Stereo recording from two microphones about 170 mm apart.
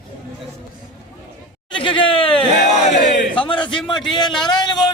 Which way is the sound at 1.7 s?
30° left (ahead or behind).